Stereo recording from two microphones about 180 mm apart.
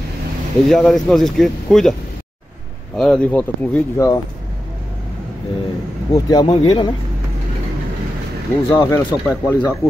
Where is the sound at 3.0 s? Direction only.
5° left (ahead or behind).